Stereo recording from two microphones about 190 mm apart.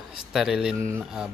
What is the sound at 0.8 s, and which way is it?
Speech, 15° right (ahead or behind).